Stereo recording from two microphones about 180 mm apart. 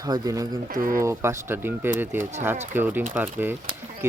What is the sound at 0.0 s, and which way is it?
Speech, 20° right (ahead or behind).